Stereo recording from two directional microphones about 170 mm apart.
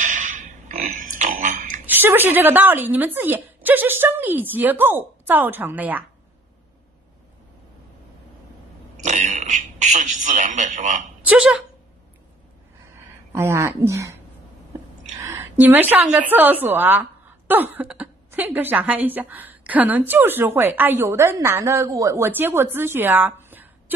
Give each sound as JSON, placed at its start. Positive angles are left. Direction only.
{"t": 0.0, "sound": "pig", "side_deg": -50}
{"t": 1.9, "sound": "speech", "side_deg": -10}
{"t": 8.9, "sound": "a sound", "side_deg": -45}
{"t": 11.2, "sound": "speech", "side_deg": -5}
{"t": 13.3, "sound": "speech", "side_deg": -15}
{"t": 15.1, "sound": "a woman's voice", "side_deg": -15}